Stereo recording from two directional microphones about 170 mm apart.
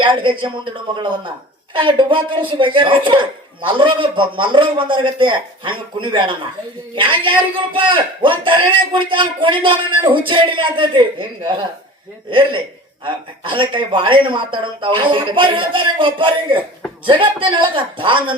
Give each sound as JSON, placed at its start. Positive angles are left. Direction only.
{"t": 0.0, "sound": "a man's voice", "side_deg": -30}